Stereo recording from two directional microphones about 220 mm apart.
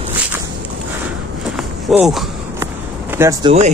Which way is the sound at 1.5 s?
Centre (ahead or behind).